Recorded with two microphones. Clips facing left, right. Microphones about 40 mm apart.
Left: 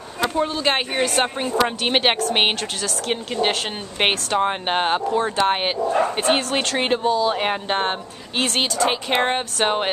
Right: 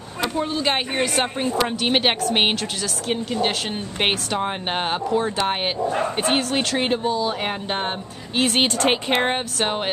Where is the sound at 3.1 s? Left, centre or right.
Centre.